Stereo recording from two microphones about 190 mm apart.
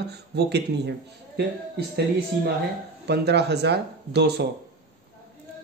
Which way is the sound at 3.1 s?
60° right (ahead or behind).